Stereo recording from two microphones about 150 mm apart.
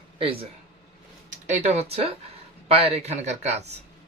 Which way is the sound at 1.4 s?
50° right (ahead or behind).